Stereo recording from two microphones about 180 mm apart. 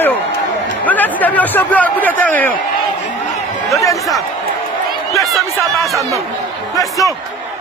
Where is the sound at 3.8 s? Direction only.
15° left (ahead or behind).